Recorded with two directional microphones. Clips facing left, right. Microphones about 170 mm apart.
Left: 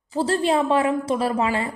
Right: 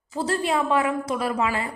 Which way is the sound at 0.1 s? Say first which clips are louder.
Left 4 dB; 30° left (ahead or behind).